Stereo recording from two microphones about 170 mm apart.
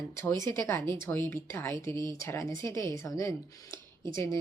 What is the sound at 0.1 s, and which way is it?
Speech, 15° left (ahead or behind).